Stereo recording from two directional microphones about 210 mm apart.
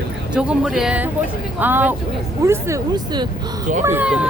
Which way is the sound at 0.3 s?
5° right (ahead or behind).